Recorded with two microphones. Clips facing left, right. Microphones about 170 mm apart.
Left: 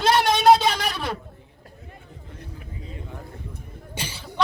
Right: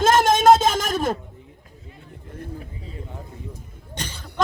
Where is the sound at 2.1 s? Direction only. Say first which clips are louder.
Right 8 dB; 50° right (ahead or behind).